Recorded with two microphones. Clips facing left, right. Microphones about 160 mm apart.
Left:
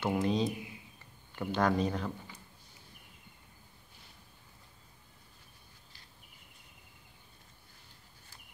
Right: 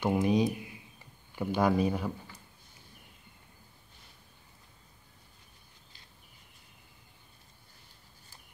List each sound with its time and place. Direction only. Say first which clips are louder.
0.0 s speech: right 4 dB; 10° right (ahead or behind)